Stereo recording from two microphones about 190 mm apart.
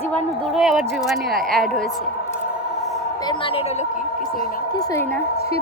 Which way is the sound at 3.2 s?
25° left (ahead or behind).